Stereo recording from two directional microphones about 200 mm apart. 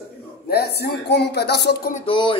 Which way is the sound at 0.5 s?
50° left (ahead or behind).